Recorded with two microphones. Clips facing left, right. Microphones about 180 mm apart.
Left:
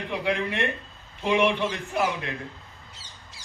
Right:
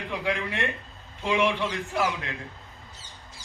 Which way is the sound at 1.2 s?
20° left (ahead or behind).